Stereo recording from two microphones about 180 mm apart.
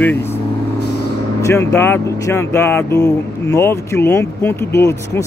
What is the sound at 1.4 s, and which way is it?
Speech, 15° left (ahead or behind).